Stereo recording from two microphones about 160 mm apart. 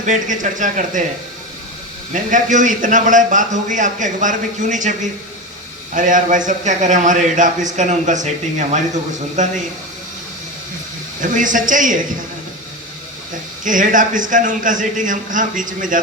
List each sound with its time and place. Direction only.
0.0 s a man's voice: 50° right (ahead or behind)
2.3 s a man's voice: 55° right (ahead or behind)
11.2 s a man's voice: 55° right (ahead or behind)
13.7 s a man's voice: 55° right (ahead or behind)